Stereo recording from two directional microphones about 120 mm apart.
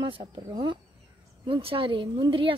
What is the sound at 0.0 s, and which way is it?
Speech, 40° right (ahead or behind).